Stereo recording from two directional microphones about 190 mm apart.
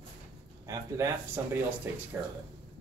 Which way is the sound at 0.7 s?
15° right (ahead or behind).